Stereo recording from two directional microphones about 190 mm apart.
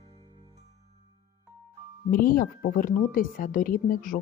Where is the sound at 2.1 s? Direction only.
50° left (ahead or behind).